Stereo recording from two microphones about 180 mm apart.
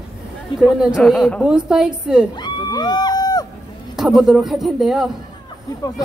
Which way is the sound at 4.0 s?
Centre (ahead or behind).